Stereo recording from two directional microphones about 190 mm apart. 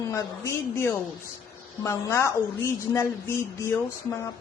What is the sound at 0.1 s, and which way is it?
A man's voice, 15° left (ahead or behind).